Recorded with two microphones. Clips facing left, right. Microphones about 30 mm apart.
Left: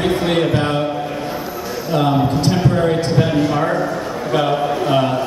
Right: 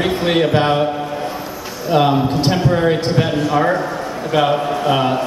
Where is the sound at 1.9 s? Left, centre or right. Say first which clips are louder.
Right 2 dB; right.